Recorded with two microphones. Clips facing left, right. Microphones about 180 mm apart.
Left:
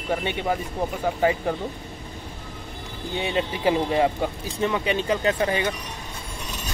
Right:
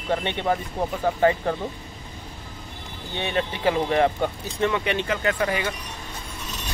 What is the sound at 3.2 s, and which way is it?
Speech, 15° left (ahead or behind).